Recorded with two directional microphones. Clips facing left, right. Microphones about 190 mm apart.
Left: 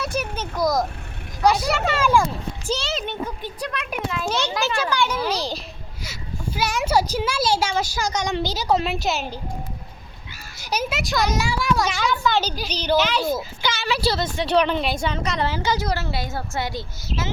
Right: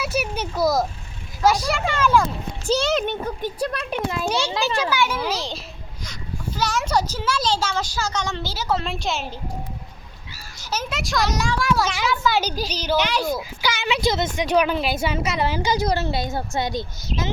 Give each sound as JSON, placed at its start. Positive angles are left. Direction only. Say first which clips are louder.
{"t": 0.0, "sound": "a sound", "louder": "right 1 dB", "side_deg": -10}
{"t": 1.5, "sound": "a child's voice", "louder": "even", "side_deg": 0}
{"t": 2.8, "sound": "a child's voice", "louder": "right 5 dB", "side_deg": -55}
{"t": 3.6, "sound": "a child's voice", "louder": "right 2 dB", "side_deg": -30}
{"t": 4.3, "sound": "a woman's voice", "louder": "left 1 dB", "side_deg": -10}
{"t": 10.6, "sound": "children playing", "louder": "left 3 dB", "side_deg": 15}
{"t": 10.9, "sound": "a child's voice", "louder": "right 1 dB", "side_deg": 0}